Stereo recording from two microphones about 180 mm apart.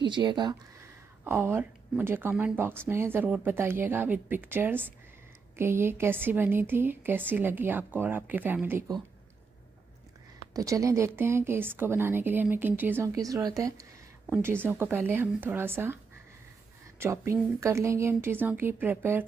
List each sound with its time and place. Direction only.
0.0 s speech: 25° right (ahead or behind)
1.2 s speech: 15° right (ahead or behind)
10.5 s speech: 20° right (ahead or behind)
17.0 s speech: 15° right (ahead or behind)